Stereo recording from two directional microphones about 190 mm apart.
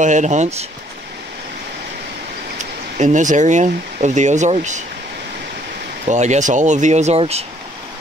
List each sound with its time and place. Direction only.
0.0 s speech: 40° right (ahead or behind)
3.0 s speech: 40° right (ahead or behind)
6.0 s speech: 40° right (ahead or behind)